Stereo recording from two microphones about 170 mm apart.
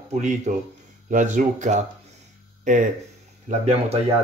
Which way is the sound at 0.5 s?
45° right (ahead or behind).